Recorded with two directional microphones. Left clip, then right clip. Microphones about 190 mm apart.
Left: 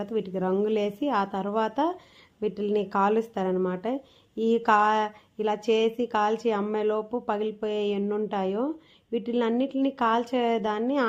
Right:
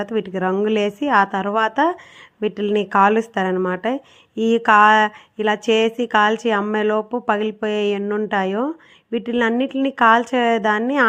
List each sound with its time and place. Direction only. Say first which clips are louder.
0.0 s speech: right 7 dB; 15° right (ahead or behind)